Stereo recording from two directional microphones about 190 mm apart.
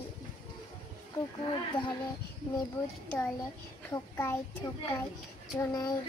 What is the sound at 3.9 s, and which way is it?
A child's voice, 15° left (ahead or behind).